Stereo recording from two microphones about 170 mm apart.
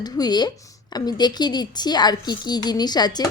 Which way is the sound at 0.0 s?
25° left (ahead or behind).